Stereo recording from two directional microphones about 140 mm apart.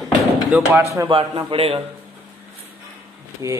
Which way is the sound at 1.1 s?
35° right (ahead or behind).